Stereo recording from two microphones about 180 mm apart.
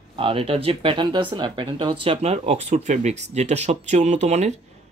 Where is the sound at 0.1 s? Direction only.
30° right (ahead or behind).